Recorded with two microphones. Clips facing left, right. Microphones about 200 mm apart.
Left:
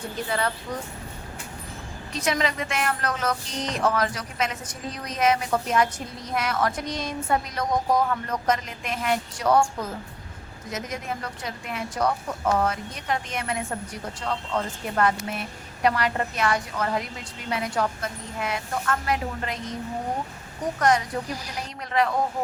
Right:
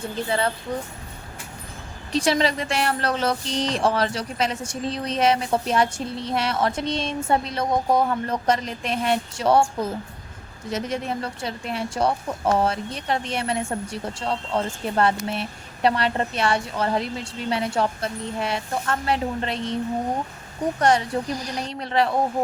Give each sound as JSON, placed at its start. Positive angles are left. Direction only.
{"t": 0.3, "sound": "speech", "side_deg": -25}
{"t": 2.1, "sound": "speech", "side_deg": -30}
{"t": 10.7, "sound": "speech", "side_deg": -30}